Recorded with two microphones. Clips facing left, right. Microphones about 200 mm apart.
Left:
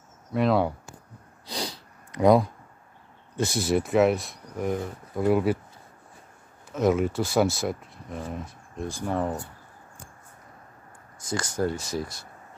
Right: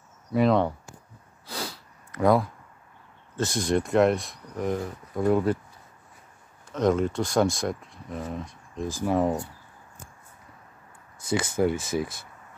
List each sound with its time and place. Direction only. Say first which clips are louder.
0.3 s speech: right 1 dB; centre (ahead or behind)
1.5 s sniff: left 2 dB; 15° left (ahead or behind)
3.3 s speech: even; 10° left (ahead or behind)
6.7 s speech: even; 5° left (ahead or behind)
9.0 s speech: right 4 dB; 10° right (ahead or behind)
11.1 s speech: right 4 dB; 60° right (ahead or behind)